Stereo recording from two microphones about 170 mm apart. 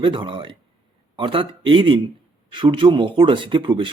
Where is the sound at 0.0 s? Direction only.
30° right (ahead or behind).